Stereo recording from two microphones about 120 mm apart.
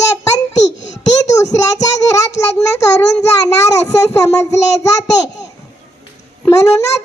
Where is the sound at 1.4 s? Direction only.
30° left (ahead or behind).